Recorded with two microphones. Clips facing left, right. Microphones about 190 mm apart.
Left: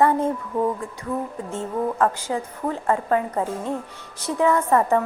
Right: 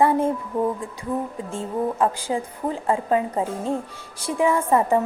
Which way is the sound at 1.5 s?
15° right (ahead or behind).